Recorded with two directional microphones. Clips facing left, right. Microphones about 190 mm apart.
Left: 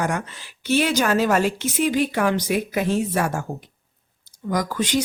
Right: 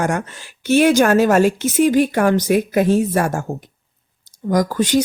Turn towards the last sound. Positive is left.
turn(degrees=-40)  # may be behind; listen again after turning